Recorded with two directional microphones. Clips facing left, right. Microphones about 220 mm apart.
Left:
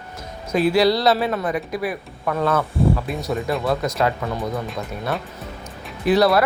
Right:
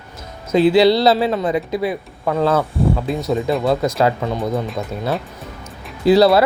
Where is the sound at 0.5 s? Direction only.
25° right (ahead or behind).